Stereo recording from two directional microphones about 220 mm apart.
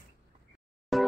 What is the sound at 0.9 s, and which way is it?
Music, centre (ahead or behind).